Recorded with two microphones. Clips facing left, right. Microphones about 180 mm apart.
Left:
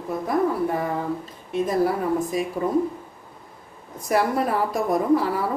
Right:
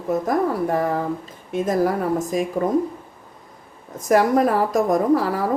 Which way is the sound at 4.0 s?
45° right (ahead or behind).